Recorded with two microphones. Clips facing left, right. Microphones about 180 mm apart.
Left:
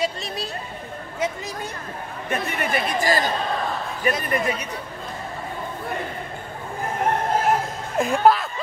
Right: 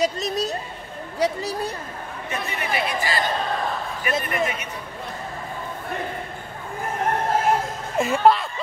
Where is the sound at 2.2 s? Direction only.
50° left (ahead or behind).